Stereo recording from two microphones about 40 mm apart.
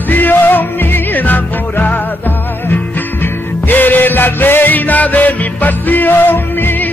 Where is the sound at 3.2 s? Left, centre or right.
Left.